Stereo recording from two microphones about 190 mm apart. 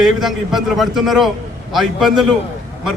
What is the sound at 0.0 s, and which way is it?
A man's voice, centre (ahead or behind).